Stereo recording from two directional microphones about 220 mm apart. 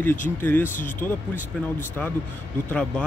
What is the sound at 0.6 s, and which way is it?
Speech, 35° left (ahead or behind).